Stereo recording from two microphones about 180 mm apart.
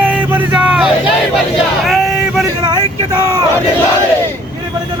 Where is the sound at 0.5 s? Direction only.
5° right (ahead or behind).